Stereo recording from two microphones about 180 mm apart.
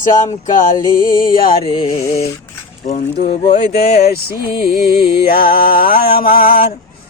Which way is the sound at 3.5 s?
60° left (ahead or behind).